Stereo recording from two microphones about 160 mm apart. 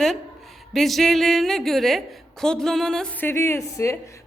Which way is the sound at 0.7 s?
Centre (ahead or behind).